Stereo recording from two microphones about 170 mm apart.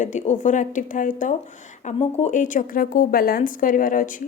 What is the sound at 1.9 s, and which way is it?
Speech, 40° left (ahead or behind).